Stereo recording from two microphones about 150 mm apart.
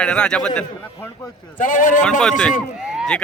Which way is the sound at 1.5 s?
60° left (ahead or behind).